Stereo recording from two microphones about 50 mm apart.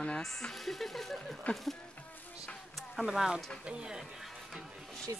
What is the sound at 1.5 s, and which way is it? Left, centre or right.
Speech, left.